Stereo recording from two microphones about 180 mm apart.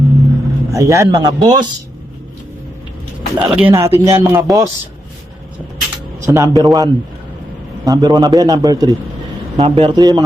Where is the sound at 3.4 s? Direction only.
10° right (ahead or behind).